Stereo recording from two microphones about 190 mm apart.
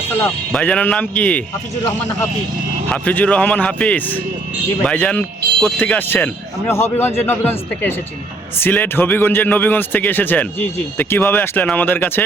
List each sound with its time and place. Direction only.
0.1 s speech: 10° left (ahead or behind)
2.9 s speech: 5° left (ahead or behind)